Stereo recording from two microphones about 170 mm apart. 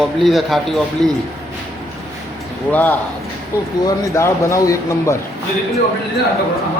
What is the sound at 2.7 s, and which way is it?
Speech, 10° left (ahead or behind).